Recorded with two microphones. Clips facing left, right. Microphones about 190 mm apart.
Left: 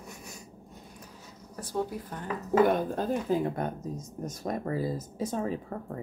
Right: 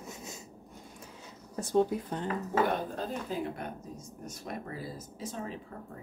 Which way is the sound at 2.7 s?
50° left (ahead or behind).